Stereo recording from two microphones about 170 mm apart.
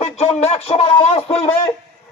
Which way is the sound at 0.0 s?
40° left (ahead or behind).